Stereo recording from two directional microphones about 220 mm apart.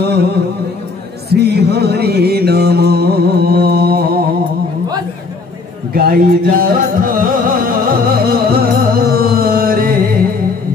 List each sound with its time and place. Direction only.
0.0 s music: 45° right (ahead or behind)
1.3 s music: 45° right (ahead or behind)
5.9 s music: 40° right (ahead or behind)